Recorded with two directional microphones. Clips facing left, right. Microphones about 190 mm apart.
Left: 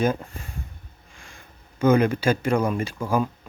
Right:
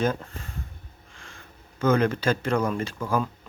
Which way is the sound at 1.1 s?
10° left (ahead or behind).